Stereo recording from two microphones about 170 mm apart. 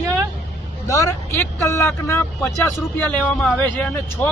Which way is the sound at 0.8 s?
20° left (ahead or behind).